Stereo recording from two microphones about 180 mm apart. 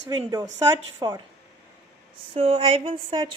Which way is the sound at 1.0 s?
20° right (ahead or behind).